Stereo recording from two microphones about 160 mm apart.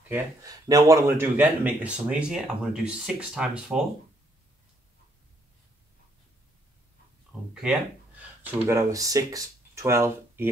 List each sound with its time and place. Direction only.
0.1 s speech: 20° right (ahead or behind); by 3.8 s 5° right (ahead or behind)
7.6 s speech: 5° right (ahead or behind)